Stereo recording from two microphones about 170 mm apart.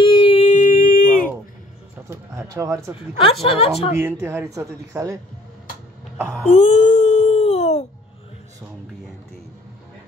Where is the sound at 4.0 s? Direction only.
15° right (ahead or behind).